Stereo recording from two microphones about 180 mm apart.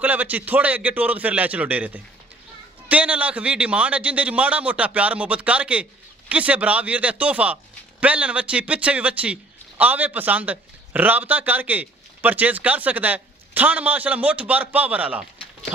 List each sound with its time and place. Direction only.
0.0 s a man's voice: 10° right (ahead or behind)